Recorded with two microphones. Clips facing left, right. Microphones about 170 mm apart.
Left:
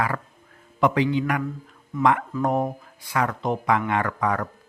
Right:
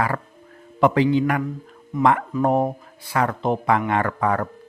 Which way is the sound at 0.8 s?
35° right (ahead or behind).